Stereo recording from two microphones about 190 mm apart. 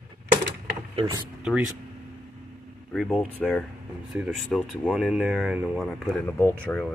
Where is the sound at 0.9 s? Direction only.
25° right (ahead or behind).